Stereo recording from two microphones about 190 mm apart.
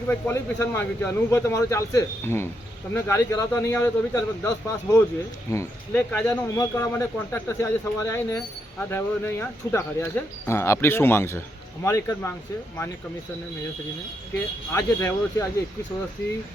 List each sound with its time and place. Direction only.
0.1 s speech: 15° left (ahead or behind)
14.3 s speech: 10° left (ahead or behind)